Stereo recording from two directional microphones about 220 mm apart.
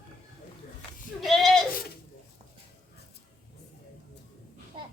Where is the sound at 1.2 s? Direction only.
Centre (ahead or behind).